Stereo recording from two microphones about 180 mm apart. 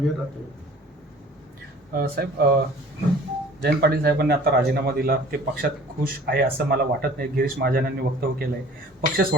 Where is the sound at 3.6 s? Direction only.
60° right (ahead or behind).